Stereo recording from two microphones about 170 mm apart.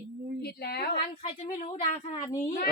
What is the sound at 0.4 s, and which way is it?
Speech, 70° left (ahead or behind).